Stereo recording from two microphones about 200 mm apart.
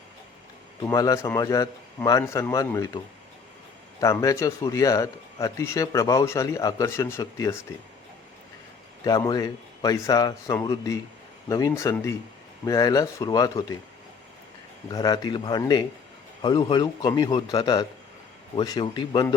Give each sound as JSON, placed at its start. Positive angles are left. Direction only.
{"t": 0.8, "sound": "speech", "side_deg": 15}
{"t": 4.0, "sound": "speech", "side_deg": 15}
{"t": 9.0, "sound": "speech", "side_deg": 20}
{"t": 14.8, "sound": "a man's voice", "side_deg": 20}